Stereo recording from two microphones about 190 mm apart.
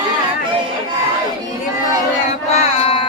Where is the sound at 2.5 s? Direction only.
30° left (ahead or behind).